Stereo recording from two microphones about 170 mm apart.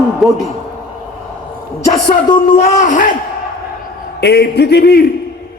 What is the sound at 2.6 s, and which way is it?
Speech, 45° left (ahead or behind).